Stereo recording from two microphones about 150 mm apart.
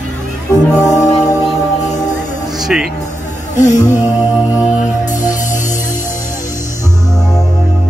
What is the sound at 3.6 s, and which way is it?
Music, 55° left (ahead or behind).